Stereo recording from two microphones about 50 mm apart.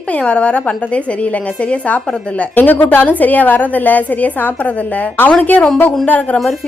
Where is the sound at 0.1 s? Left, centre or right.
Left.